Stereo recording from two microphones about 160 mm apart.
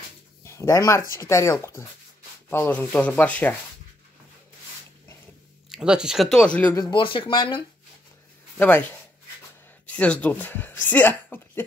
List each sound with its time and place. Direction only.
0.4 s speech: 20° left (ahead or behind)
5.7 s speech: 5° right (ahead or behind)
6.7 s speech: 30° left (ahead or behind)
8.5 s speech: 10° left (ahead or behind)
9.8 s speech: 10° left (ahead or behind)